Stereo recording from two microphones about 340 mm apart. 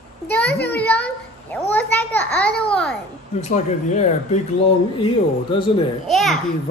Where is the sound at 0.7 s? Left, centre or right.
Centre.